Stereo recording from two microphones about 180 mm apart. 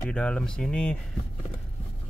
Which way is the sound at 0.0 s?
5° left (ahead or behind).